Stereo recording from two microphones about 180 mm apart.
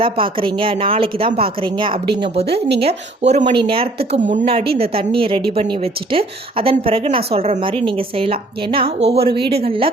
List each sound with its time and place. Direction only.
0.0 s speech: 30° right (ahead or behind)
2.5 s speech: 65° right (ahead or behind)
2.8 s a woman's voice: 40° right (ahead or behind)